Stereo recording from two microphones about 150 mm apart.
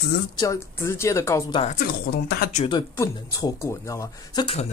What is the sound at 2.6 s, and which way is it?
Speech, 40° left (ahead or behind).